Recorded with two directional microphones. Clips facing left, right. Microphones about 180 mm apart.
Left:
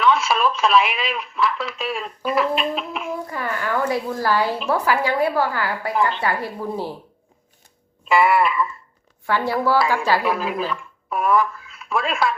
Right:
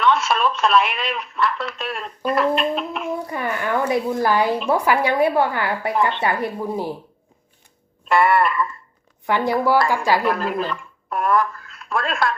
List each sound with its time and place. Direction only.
0.0 s speech: centre (ahead or behind)
3.2 s speech: 20° right (ahead or behind)
5.9 s speech: centre (ahead or behind)
6.2 s a woman's voice: 20° right (ahead or behind)
8.0 s speech: centre (ahead or behind)
9.2 s a woman's voice: 15° right (ahead or behind)
10.2 s speech: 5° left (ahead or behind)